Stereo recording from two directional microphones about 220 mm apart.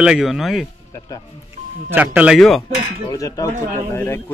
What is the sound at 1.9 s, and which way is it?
Speech, 5° right (ahead or behind).